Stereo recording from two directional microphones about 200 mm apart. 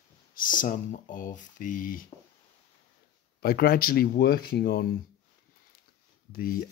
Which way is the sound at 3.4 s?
50° left (ahead or behind).